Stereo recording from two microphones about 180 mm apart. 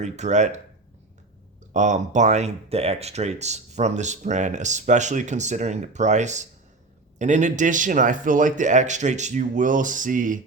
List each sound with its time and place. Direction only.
0.0 s speech: 40° right (ahead or behind)
1.7 s speech: 40° right (ahead or behind)